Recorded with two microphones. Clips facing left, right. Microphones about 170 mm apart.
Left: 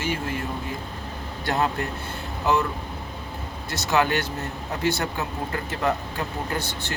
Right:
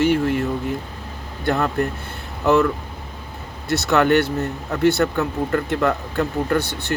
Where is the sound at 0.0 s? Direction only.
65° right (ahead or behind).